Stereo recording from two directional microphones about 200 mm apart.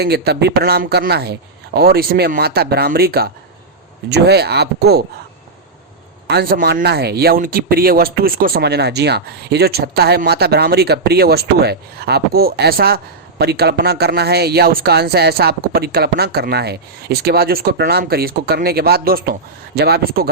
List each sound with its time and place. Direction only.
0.0 s speech: 55° right (ahead or behind)
6.2 s speech: 50° right (ahead or behind)